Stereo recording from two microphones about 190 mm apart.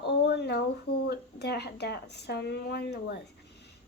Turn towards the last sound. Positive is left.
turn(degrees=60)  # may be behind; listen again after turning